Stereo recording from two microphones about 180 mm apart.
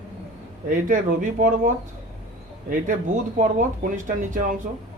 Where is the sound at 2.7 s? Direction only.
45° right (ahead or behind).